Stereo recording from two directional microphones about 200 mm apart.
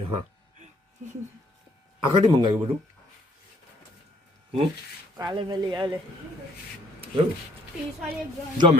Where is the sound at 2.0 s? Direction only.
25° right (ahead or behind).